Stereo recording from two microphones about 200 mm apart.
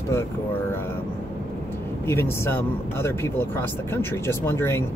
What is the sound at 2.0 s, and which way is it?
Speech, 10° left (ahead or behind).